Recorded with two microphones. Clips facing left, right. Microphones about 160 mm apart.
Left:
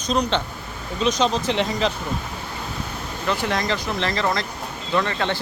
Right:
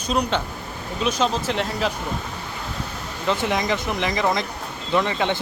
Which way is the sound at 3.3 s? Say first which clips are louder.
Right 1 dB; 20° right (ahead or behind).